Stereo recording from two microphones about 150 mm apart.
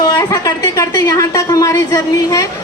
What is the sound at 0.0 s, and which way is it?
Speech, 25° left (ahead or behind).